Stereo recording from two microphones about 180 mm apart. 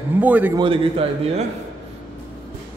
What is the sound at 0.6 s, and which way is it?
Speech, 30° right (ahead or behind).